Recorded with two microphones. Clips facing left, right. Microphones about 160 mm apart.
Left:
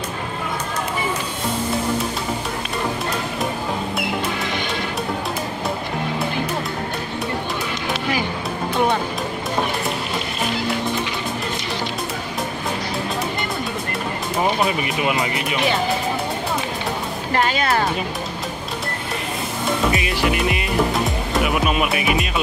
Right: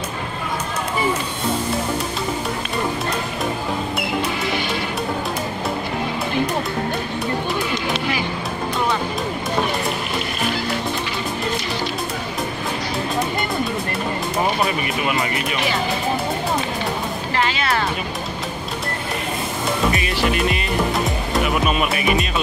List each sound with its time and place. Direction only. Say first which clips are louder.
17.3 s music: left 2 dB; 45° left (ahead or behind)
19.9 s music: even; 15° left (ahead or behind)
21.8 s music: right 1 dB; centre (ahead or behind)